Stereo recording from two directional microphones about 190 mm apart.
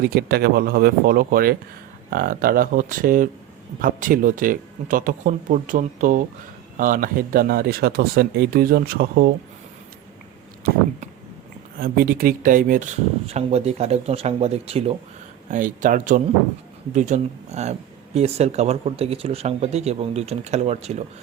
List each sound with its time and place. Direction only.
0.0 s speech: 55° right (ahead or behind)
11.8 s speech: 50° right (ahead or behind)